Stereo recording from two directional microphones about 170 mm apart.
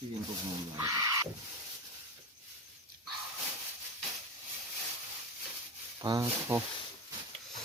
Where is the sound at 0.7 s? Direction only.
20° right (ahead or behind).